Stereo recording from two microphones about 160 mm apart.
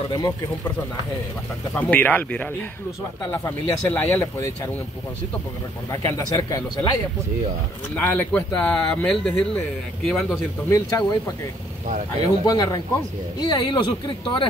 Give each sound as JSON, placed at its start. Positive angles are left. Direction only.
{"t": 0.1, "sound": "speech", "side_deg": 25}
{"t": 1.8, "sound": "speech", "side_deg": 10}
{"t": 5.9, "sound": "speech", "side_deg": 20}
{"t": 7.9, "sound": "speech", "side_deg": 10}
{"t": 10.7, "sound": "speech", "side_deg": 25}
{"t": 12.4, "sound": "speech", "side_deg": 25}